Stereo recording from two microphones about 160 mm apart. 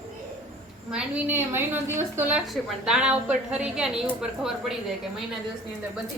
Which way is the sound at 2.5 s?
Centre (ahead or behind).